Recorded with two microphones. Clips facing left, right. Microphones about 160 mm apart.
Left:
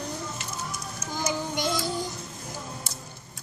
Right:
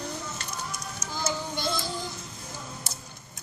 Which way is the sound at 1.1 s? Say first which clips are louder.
Left 2 dB; 15° left (ahead or behind).